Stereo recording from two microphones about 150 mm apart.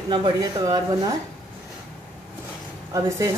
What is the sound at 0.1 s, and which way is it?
Speech, 25° right (ahead or behind).